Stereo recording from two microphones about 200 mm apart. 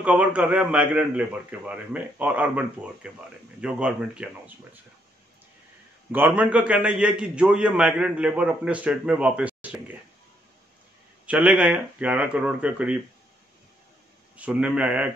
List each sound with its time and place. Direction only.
0.0 s a man's voice: 5° right (ahead or behind)
6.1 s a man's voice: 10° right (ahead or behind)
11.2 s a man's voice: 5° right (ahead or behind)
14.3 s a man's voice: 5° right (ahead or behind)